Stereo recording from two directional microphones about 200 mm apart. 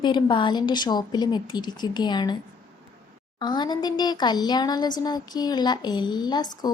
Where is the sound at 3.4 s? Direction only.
20° left (ahead or behind).